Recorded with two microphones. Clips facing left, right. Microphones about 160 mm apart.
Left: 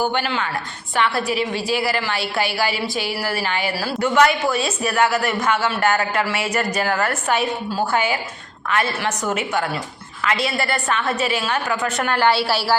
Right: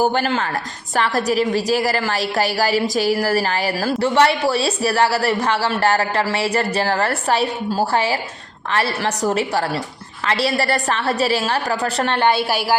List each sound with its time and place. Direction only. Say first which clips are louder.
0.0 s a man's voice: right 4 dB; 40° right (ahead or behind)
4.1 s a man's voice: left 1 dB; 30° right (ahead or behind); by 12.7 s 15° right (ahead or behind)